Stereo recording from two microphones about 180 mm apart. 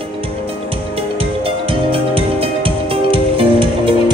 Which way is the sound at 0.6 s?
30° right (ahead or behind).